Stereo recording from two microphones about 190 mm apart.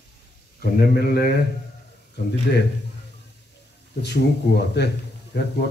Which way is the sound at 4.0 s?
60° left (ahead or behind).